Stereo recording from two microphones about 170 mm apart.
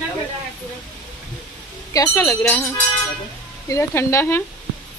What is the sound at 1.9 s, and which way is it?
Speech, 15° left (ahead or behind).